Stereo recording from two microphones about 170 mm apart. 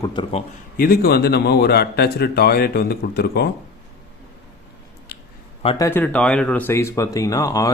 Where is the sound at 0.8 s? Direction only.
65° left (ahead or behind).